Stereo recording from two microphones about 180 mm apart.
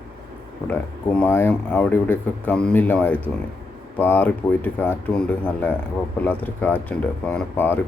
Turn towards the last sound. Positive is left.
turn(degrees=10)  # may be behind; listen again after turning